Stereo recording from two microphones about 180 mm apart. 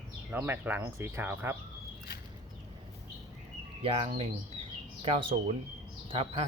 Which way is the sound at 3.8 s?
30° right (ahead or behind).